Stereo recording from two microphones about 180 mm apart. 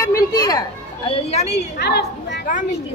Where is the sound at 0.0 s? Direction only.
20° left (ahead or behind).